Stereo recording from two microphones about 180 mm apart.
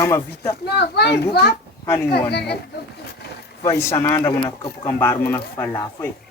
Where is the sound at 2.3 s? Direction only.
65° left (ahead or behind).